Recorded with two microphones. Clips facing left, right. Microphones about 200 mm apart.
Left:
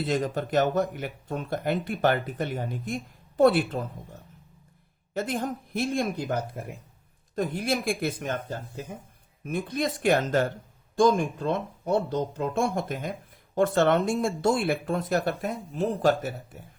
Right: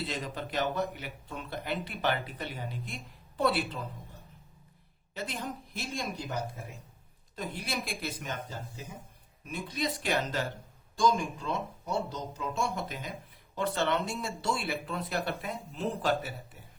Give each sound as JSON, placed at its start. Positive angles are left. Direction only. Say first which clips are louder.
{"t": 0.0, "sound": "speech", "louder": "left 9 dB", "side_deg": 50}